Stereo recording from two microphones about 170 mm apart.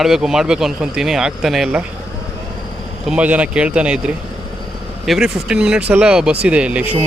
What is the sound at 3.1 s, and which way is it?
Speech, 10° right (ahead or behind).